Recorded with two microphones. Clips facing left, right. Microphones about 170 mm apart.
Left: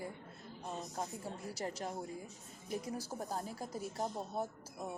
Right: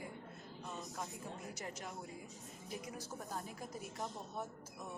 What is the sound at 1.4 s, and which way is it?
Speech, 35° left (ahead or behind).